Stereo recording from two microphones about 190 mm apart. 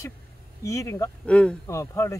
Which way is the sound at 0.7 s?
15° left (ahead or behind).